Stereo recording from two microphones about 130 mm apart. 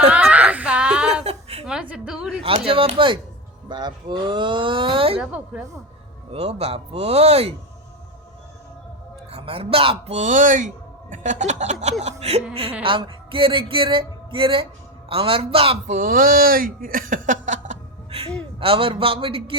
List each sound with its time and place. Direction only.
0.0 s a sound: 10° right (ahead or behind)
1.2 s a sound: 55° right (ahead or behind)
1.6 s a woman's voice: 10° right (ahead or behind)
2.4 s speech: 45° right (ahead or behind)
5.2 s speech: 10° right (ahead or behind)
6.3 s speech: 50° right (ahead or behind)
9.3 s speech: 50° right (ahead or behind); by 10.7 s 75° right (ahead or behind)
11.1 s a sound: 65° right (ahead or behind)
12.8 s speech: 40° right (ahead or behind)
15.9 s speech: 90° right; by 17.7 s 70° right (ahead or behind)
18.6 s speech: 45° right (ahead or behind)